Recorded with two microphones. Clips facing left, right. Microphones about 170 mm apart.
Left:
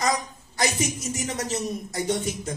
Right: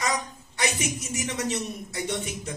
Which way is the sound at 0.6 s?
35° left (ahead or behind).